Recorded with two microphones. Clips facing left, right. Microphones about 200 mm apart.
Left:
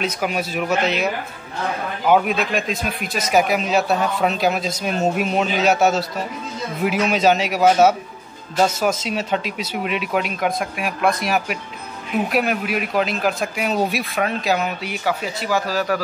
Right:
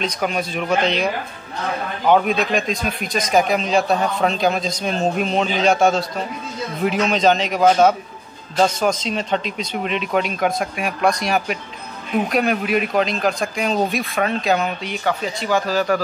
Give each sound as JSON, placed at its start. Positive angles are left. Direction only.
{"t": 0.0, "sound": "a man's voice", "side_deg": 5}